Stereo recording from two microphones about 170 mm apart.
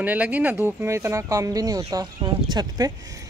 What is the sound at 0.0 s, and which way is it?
Speech, 10° right (ahead or behind).